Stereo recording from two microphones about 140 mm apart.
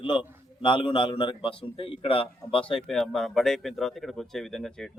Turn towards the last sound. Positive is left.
turn(degrees=5)  # may be behind; listen again after turning